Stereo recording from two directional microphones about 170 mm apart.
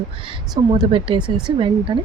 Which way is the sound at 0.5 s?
30° right (ahead or behind).